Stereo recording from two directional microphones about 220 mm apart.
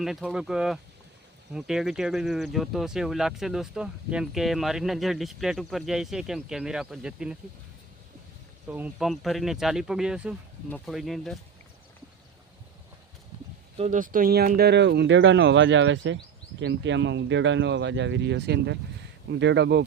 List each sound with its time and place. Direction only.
0.0 s speech: centre (ahead or behind)
8.6 s speech: 5° right (ahead or behind)
13.7 s speech: 30° right (ahead or behind); by 19.8 s 55° right (ahead or behind)